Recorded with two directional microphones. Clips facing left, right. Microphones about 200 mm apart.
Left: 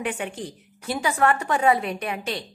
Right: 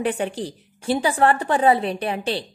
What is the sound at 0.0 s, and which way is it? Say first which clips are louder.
A woman's voice: right 5 dB; 35° right (ahead or behind).